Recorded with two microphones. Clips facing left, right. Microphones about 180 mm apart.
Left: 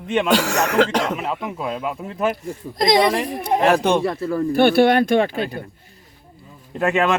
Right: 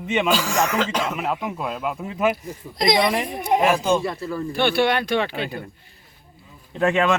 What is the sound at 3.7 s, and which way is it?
Speech, 65° left (ahead or behind).